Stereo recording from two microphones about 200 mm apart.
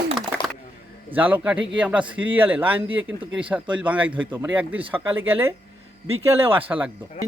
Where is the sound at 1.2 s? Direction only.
5° right (ahead or behind).